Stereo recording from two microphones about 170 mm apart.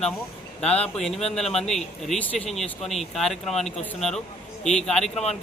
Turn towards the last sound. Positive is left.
turn(degrees=5)  # may be behind; listen again after turning